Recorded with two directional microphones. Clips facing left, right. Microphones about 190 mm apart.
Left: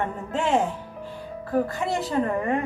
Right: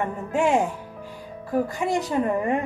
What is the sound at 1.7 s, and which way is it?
Speech, 15° right (ahead or behind).